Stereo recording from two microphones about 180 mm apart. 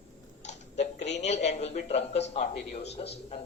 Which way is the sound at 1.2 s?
40° left (ahead or behind).